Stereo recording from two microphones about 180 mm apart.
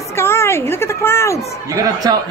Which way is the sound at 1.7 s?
20° right (ahead or behind).